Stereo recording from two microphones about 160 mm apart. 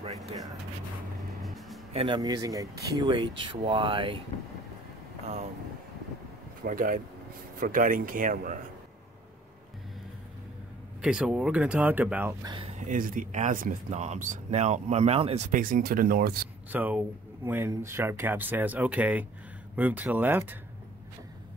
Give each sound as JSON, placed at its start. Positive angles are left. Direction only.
{"t": 1.4, "sound": "music", "side_deg": 0}
{"t": 2.0, "sound": "speech", "side_deg": -30}
{"t": 5.2, "sound": "vehicle", "side_deg": -40}
{"t": 6.6, "sound": "speech", "side_deg": -60}
{"t": 11.0, "sound": "speech", "side_deg": -5}
{"t": 12.4, "sound": "speech", "side_deg": -35}
{"t": 12.7, "sound": "speech", "side_deg": -55}
{"t": 15.5, "sound": "speech", "side_deg": -60}
{"t": 16.7, "sound": "speech", "side_deg": -10}